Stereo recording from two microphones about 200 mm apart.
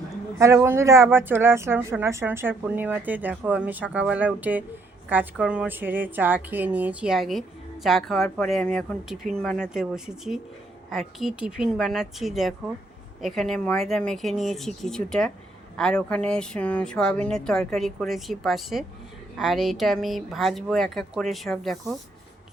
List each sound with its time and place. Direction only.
0.3 s a woman's voice: 15° right (ahead or behind)